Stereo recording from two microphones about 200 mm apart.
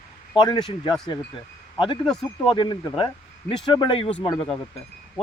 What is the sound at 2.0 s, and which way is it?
Speech, centre (ahead or behind).